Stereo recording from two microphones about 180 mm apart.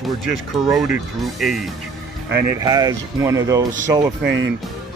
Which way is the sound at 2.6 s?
20° right (ahead or behind).